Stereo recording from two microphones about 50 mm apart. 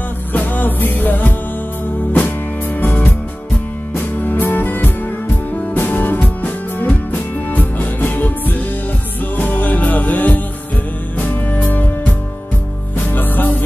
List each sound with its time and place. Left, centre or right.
0.3 s music: left
4.2 s music: left
12.9 s music: left